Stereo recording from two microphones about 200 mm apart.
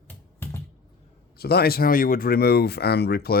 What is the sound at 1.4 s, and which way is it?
Speech, 50° left (ahead or behind).